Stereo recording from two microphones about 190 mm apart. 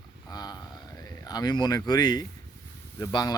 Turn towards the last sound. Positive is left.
turn(degrees=20)  # may be behind; listen again after turning